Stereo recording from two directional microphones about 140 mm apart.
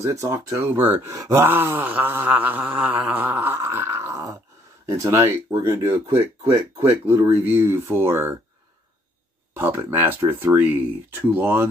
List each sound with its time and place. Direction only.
0.0 s speech: 20° right (ahead or behind)
9.5 s speech: 15° right (ahead or behind)